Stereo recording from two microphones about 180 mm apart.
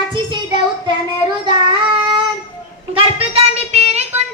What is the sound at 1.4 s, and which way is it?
Child singing, 25° right (ahead or behind).